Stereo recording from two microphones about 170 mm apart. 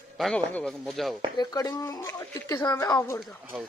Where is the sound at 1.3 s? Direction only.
20° left (ahead or behind).